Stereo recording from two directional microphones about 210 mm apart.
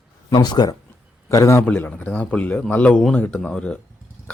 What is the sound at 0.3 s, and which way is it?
Speech, 20° left (ahead or behind).